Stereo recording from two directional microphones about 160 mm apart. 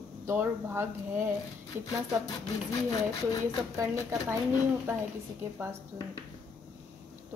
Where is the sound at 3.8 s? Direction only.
15° right (ahead or behind).